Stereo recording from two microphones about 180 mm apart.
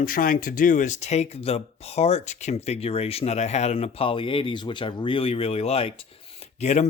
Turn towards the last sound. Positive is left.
turn(degrees=40)  # may be behind; listen again after turning